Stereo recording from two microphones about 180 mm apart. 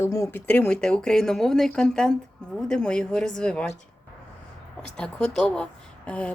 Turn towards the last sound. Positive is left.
turn(degrees=5)  # may be behind; listen again after turning